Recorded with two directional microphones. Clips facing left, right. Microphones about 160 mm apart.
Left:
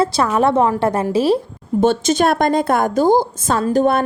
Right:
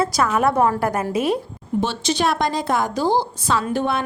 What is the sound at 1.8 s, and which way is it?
A woman's voice, 50° left (ahead or behind).